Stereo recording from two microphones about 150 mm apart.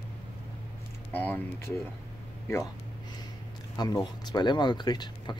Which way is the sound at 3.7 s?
25° left (ahead or behind).